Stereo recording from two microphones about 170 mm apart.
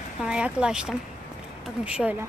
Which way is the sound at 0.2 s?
5° right (ahead or behind).